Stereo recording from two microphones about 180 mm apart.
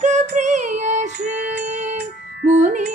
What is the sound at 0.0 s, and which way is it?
Female singing, 40° right (ahead or behind).